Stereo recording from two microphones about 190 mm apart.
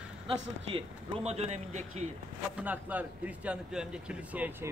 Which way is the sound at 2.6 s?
10° right (ahead or behind).